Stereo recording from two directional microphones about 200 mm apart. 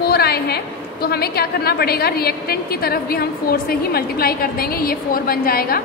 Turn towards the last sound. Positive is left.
turn(degrees=45)  # may be behind; listen again after turning